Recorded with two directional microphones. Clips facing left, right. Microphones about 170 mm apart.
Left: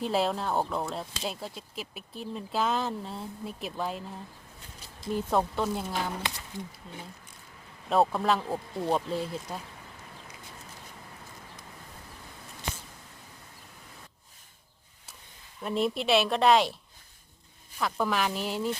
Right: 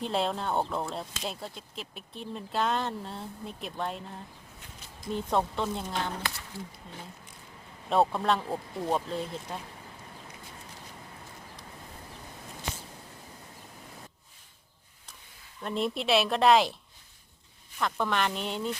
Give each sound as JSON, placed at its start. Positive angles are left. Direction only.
{"t": 0.0, "sound": "speech", "side_deg": 5}
{"t": 5.1, "sound": "speech", "side_deg": 5}
{"t": 6.5, "sound": "speech", "side_deg": 20}
{"t": 7.9, "sound": "speech", "side_deg": 0}
{"t": 15.6, "sound": "speech", "side_deg": 0}
{"t": 17.7, "sound": "speech", "side_deg": 5}